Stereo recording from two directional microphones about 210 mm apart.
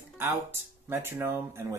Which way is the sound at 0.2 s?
10° right (ahead or behind).